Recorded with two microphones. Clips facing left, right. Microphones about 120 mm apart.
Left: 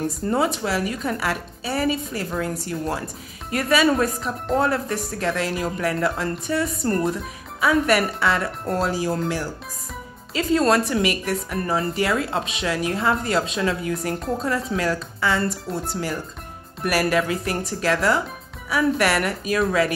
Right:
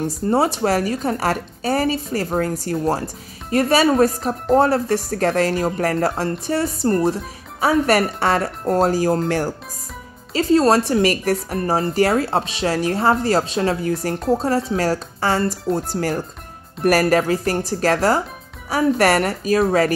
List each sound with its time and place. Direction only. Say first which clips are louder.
0.6 s speech: right 5 dB; 45° right (ahead or behind)
10.3 s speech: right 4 dB; 35° right (ahead or behind)